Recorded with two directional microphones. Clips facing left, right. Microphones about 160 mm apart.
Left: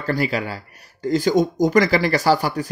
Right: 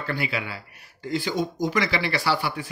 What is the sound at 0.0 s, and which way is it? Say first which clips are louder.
Speech: left 7 dB; 40° left (ahead or behind).